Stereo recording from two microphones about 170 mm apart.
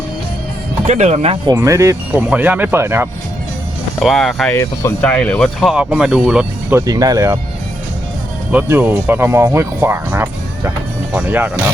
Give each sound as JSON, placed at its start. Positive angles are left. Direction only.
{"t": 0.9, "sound": "speech", "side_deg": -40}
{"t": 1.5, "sound": "speech", "side_deg": -20}
{"t": 4.0, "sound": "speech", "side_deg": 0}
{"t": 4.5, "sound": "speech", "side_deg": 15}
{"t": 5.0, "sound": "speech", "side_deg": 5}
{"t": 6.8, "sound": "speech", "side_deg": -20}
{"t": 8.5, "sound": "speech", "side_deg": -15}